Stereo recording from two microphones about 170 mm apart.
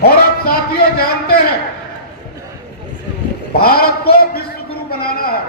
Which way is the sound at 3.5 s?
65° left (ahead or behind).